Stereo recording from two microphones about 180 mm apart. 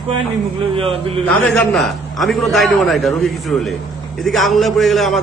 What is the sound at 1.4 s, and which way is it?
A man's voice, centre (ahead or behind).